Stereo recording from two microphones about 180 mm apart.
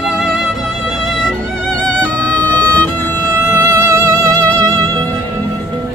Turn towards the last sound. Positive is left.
turn(degrees=-20)  # may be behind; listen again after turning